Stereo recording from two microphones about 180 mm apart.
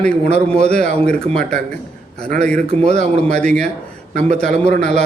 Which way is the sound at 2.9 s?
5° left (ahead or behind).